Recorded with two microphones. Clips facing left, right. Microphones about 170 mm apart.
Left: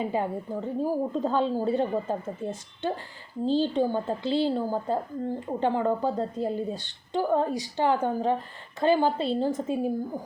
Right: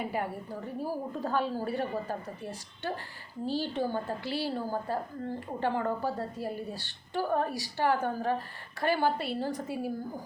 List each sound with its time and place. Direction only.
0.0 s a woman's voice: 20° left (ahead or behind)